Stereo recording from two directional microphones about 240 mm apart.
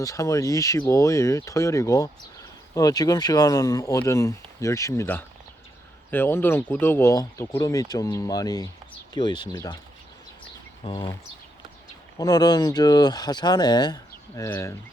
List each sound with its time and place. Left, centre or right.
0.0 s speech: centre
10.8 s speech: centre